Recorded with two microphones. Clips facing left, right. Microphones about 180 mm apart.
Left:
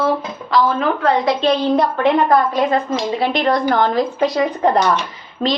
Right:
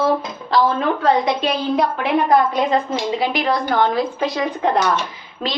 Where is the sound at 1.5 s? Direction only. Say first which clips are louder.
Left 4 dB; 5° right (ahead or behind).